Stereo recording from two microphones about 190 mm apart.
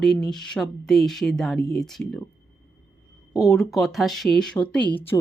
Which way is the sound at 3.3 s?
Centre (ahead or behind).